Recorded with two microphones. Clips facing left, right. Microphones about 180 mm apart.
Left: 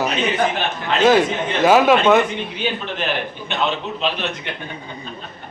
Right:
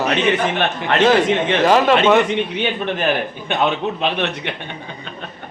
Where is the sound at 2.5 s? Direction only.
70° right (ahead or behind).